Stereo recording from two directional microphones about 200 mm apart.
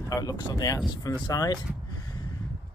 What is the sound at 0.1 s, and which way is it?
Speech, 20° left (ahead or behind).